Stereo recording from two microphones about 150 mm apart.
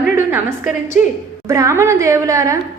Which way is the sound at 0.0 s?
15° right (ahead or behind).